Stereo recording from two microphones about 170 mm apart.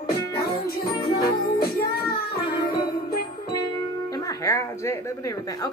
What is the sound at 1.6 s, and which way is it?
Music, 65° left (ahead or behind).